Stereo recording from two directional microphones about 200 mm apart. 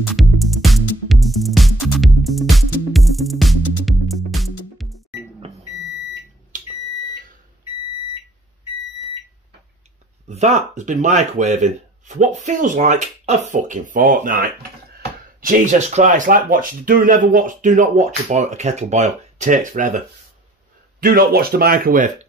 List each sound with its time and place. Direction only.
0.1 s music: centre (ahead or behind)
10.2 s speech: 35° right (ahead or behind)
21.0 s speech: 50° right (ahead or behind)